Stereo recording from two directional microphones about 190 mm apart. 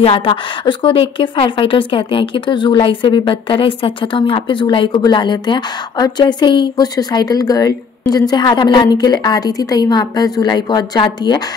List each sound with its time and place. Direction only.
0.0 s a woman's voice: 30° left (ahead or behind)